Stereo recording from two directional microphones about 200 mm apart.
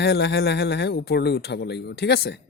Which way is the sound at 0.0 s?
55° left (ahead or behind).